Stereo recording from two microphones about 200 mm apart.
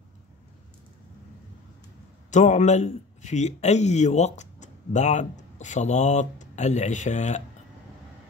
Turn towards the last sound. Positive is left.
turn(degrees=35)  # may be behind; listen again after turning